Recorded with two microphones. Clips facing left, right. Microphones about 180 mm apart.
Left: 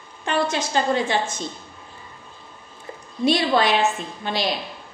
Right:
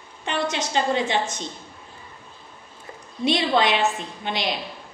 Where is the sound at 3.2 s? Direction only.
20° right (ahead or behind).